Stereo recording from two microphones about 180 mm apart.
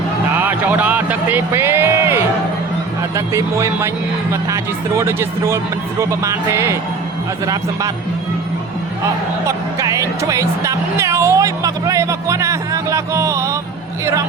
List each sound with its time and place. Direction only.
0.3 s a sound: 10° right (ahead or behind)
3.2 s speech: 15° right (ahead or behind)
4.9 s speech: 15° right (ahead or behind)
9.5 s music: 20° right (ahead or behind)
14.0 s speech: 15° right (ahead or behind)